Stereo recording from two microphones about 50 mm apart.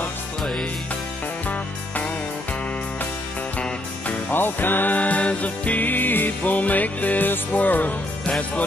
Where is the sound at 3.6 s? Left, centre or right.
Left.